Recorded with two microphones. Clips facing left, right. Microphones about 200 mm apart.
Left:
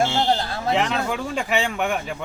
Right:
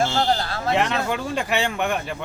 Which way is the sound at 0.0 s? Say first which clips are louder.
Even; 15° left (ahead or behind).